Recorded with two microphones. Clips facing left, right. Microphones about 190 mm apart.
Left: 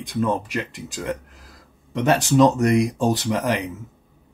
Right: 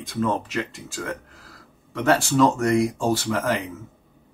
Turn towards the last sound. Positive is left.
turn(degrees=15)  # may be behind; listen again after turning